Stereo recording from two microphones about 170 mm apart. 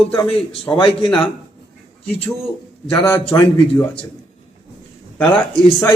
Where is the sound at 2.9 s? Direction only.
15° left (ahead or behind).